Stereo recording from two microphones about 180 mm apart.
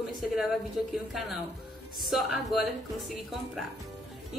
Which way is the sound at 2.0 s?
Centre (ahead or behind).